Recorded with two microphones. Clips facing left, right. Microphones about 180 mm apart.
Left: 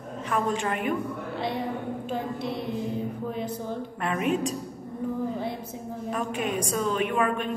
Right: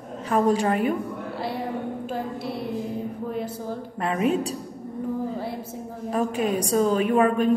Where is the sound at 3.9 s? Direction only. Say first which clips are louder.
Right 4 dB; 30° right (ahead or behind).